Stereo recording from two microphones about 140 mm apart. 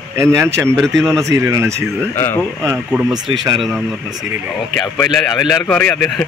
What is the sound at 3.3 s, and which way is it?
Speech, 35° right (ahead or behind).